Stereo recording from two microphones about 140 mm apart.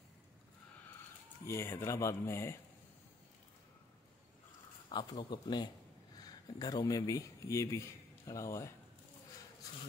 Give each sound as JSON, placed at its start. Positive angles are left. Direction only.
{"t": 1.4, "sound": "speech", "side_deg": 15}
{"t": 4.8, "sound": "a man's voice", "side_deg": 35}